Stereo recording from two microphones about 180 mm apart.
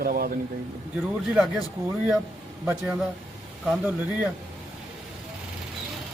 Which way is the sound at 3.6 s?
10° right (ahead or behind).